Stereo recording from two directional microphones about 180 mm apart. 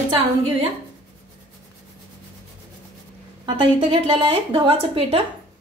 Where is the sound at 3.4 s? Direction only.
25° right (ahead or behind).